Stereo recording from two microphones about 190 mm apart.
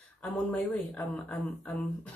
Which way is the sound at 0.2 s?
5° left (ahead or behind).